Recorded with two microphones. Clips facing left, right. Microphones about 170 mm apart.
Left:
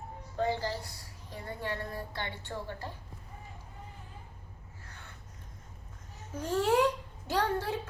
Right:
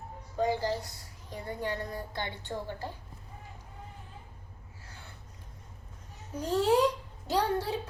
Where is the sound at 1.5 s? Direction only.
15° right (ahead or behind).